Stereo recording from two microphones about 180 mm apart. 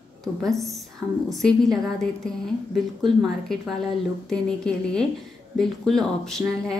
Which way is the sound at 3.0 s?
Centre (ahead or behind).